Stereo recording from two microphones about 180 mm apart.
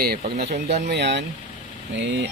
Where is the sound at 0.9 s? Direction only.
75° right (ahead or behind).